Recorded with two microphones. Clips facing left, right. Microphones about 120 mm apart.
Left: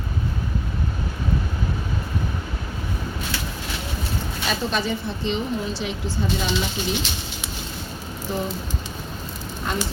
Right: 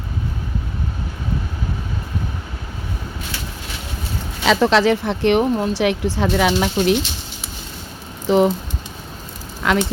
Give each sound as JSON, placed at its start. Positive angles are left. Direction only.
{"t": 4.4, "sound": "speech", "side_deg": -85}
{"t": 8.3, "sound": "a sound", "side_deg": -80}
{"t": 9.6, "sound": "speech", "side_deg": -90}